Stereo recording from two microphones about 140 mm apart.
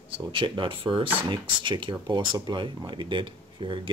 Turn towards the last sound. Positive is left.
turn(degrees=-35)  # may be behind; listen again after turning